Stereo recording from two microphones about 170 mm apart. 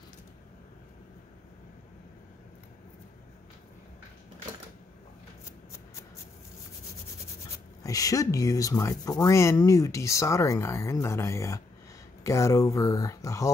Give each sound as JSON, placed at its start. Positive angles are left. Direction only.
{"t": 7.8, "sound": "speech", "side_deg": 20}